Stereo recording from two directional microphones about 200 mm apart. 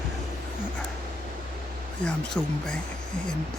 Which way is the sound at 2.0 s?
5° left (ahead or behind).